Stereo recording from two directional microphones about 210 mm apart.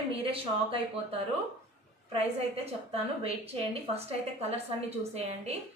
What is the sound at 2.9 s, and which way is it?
A woman's voice, 30° right (ahead or behind).